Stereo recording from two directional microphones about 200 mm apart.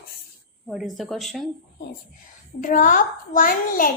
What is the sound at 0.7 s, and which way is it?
Speech, centre (ahead or behind).